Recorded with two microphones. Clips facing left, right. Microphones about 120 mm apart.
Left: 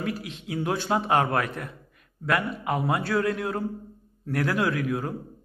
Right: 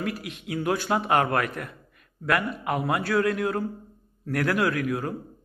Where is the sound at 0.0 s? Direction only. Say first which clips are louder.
Even; 25° left (ahead or behind).